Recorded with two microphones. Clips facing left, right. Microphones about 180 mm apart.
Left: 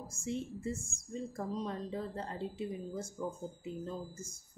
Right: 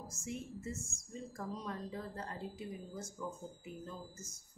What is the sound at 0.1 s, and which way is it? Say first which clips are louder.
A woman's voice: left 7 dB; 30° left (ahead or behind).